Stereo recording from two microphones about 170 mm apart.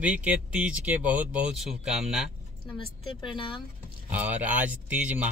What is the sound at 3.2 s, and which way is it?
Speech, 30° left (ahead or behind).